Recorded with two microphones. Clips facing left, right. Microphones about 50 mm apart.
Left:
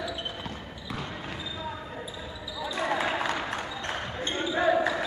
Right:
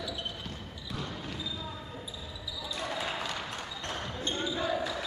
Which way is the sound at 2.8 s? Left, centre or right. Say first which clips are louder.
Left 8 dB; left.